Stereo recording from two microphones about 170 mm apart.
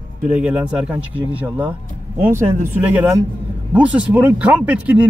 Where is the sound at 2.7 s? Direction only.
10° right (ahead or behind).